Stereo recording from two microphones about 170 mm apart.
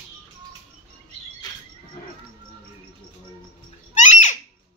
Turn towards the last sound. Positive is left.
turn(degrees=45)  # may be behind; listen again after turning